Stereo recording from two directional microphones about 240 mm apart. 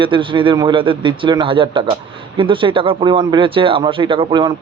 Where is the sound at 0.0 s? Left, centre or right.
Right.